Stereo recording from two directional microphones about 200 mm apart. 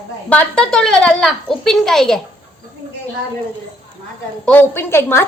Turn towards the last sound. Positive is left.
turn(degrees=10)  # may be behind; listen again after turning